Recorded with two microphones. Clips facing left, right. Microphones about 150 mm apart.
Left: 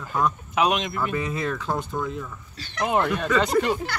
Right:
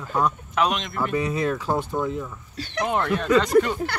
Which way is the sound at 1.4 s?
10° right (ahead or behind).